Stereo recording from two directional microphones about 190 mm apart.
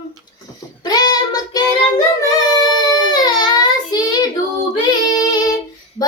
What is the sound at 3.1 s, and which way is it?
Child singing, 20° left (ahead or behind).